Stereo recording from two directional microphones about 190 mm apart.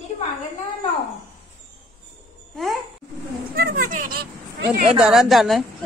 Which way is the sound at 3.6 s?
50° right (ahead or behind).